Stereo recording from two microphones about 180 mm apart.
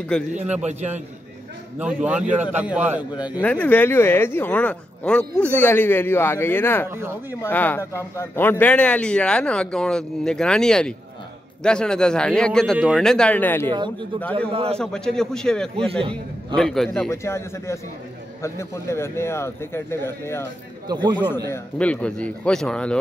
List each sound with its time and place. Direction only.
0.3 s a man's voice: 40° right (ahead or behind)
1.8 s a man's voice: 5° right (ahead or behind)
3.4 s speech: 10° left (ahead or behind)
6.9 s a man's voice: 15° right (ahead or behind)
7.4 s speech: 10° left (ahead or behind)
13.7 s a man's voice: 25° right (ahead or behind)
14.8 s speech: 5° left (ahead or behind)
15.9 s a man's voice: 30° right (ahead or behind)
16.5 s speech: centre (ahead or behind)
17.1 s speech: 15° left (ahead or behind)
21.5 s speech: 5° left (ahead or behind)